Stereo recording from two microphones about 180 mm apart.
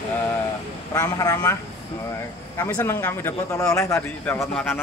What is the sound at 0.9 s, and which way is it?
Speech, 20° left (ahead or behind).